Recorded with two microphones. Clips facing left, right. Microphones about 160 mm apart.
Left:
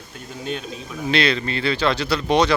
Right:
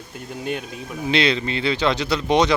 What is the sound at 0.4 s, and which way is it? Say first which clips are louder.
Speech: even; 15° right (ahead or behind).